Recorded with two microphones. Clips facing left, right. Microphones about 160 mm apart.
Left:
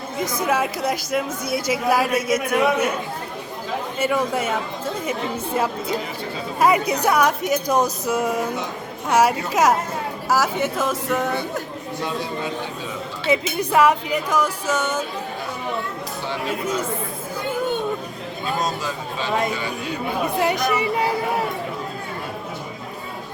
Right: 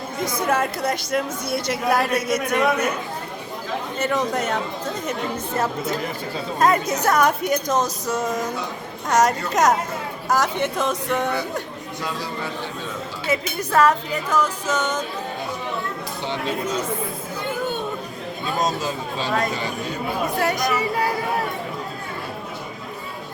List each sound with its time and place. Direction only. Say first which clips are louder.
0.4 s speech: even; 10° left (ahead or behind)
3.9 s speech: left 1 dB; 10° left (ahead or behind)
6.6 s speech: left 1 dB; 10° left (ahead or behind)
13.2 s speech: left 4 dB; 20° left (ahead or behind)
20.4 s speech: left 2 dB; 15° left (ahead or behind)